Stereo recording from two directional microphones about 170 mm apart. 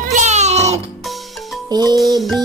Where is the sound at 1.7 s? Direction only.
25° right (ahead or behind).